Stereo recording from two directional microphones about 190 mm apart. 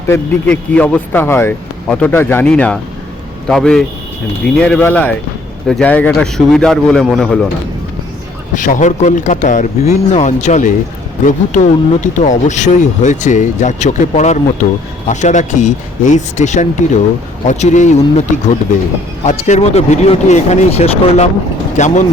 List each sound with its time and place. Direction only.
0.1 s a man's voice: 5° left (ahead or behind)
8.5 s speech: 40° left (ahead or behind)
19.2 s speech: 40° left (ahead or behind)